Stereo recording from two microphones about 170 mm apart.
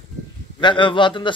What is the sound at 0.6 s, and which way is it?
Speech, 30° left (ahead or behind).